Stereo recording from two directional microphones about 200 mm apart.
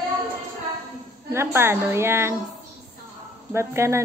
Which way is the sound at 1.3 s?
15° right (ahead or behind).